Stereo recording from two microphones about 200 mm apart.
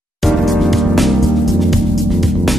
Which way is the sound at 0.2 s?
Centre (ahead or behind).